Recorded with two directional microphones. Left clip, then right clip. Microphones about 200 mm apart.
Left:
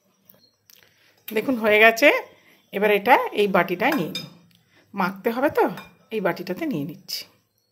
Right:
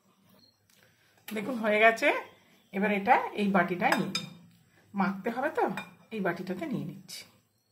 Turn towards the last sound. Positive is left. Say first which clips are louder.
# left 11 dB
turn(degrees=40)  # may be behind; listen again after turning